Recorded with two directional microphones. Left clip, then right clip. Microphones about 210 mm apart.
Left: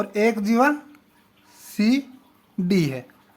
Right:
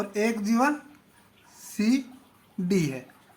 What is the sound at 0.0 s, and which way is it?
Speech, 40° left (ahead or behind).